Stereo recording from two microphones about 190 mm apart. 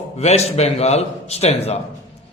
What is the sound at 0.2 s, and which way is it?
A man's voice, 35° left (ahead or behind).